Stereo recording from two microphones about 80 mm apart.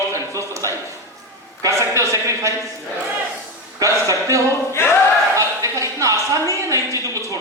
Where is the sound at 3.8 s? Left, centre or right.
Right.